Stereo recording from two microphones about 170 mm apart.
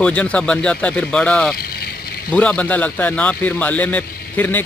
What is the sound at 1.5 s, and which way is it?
Vehicle, 65° left (ahead or behind).